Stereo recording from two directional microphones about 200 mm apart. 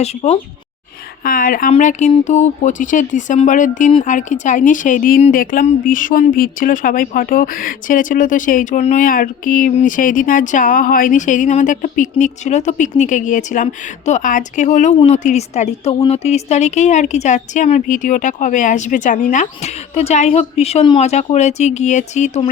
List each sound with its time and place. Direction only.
0.0 s speech: 35° left (ahead or behind)
1.2 s a woman's voice: 45° left (ahead or behind)